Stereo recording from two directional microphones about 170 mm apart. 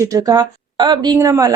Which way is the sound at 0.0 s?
20° right (ahead or behind).